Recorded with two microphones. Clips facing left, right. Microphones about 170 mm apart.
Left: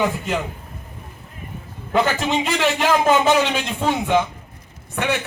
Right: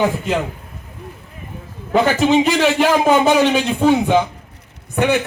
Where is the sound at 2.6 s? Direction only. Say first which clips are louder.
Right 3 dB; 10° right (ahead or behind).